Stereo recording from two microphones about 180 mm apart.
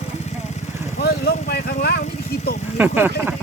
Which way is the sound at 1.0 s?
60° left (ahead or behind).